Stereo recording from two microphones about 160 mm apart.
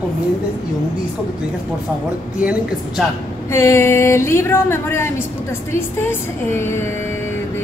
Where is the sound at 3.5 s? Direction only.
15° left (ahead or behind).